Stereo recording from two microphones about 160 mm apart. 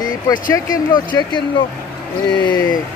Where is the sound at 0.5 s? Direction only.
25° left (ahead or behind).